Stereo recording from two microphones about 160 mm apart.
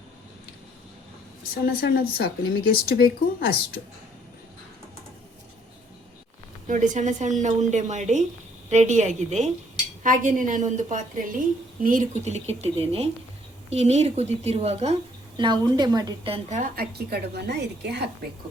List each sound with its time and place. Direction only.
1.6 s speech: 70° left (ahead or behind)
6.7 s a woman's voice: 50° right (ahead or behind)
15.4 s a woman's voice: 30° right (ahead or behind)
16.3 s a woman's voice: 45° right (ahead or behind)
16.7 s a woman's voice: 80° right